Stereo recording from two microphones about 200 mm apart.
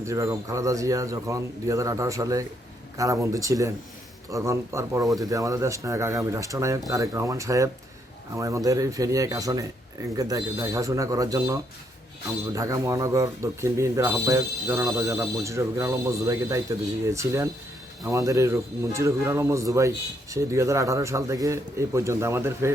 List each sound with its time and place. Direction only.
0.0 s speech: 15° right (ahead or behind)